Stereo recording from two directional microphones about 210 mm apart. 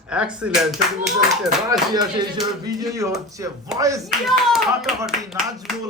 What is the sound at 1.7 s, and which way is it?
Speech, 20° right (ahead or behind).